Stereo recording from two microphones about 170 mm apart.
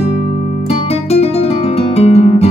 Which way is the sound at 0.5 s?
35° left (ahead or behind).